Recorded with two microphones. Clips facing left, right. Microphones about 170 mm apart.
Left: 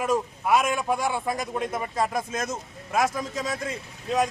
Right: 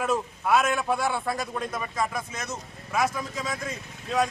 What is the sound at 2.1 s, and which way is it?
Speech, 50° left (ahead or behind).